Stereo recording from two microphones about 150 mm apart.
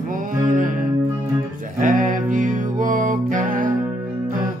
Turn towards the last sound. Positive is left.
turn(degrees=-65)  # may be behind; listen again after turning